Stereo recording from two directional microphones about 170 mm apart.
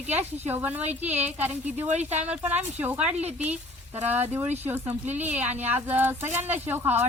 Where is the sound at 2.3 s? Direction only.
10° right (ahead or behind).